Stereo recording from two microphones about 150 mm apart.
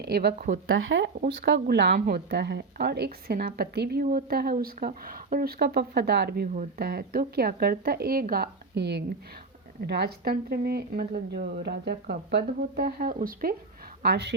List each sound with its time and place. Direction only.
0.0 s speech: 90° right; by 0.6 s 65° right (ahead or behind)
1.2 s speech: 80° right
14.0 s speech: 90° right